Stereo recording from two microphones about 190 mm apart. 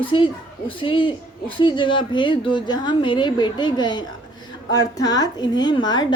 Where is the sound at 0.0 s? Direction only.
25° left (ahead or behind).